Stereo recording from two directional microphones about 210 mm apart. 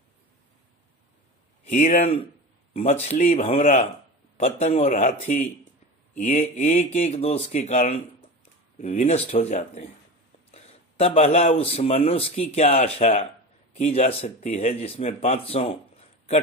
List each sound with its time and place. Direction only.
1.7 s speech: 40° left (ahead or behind)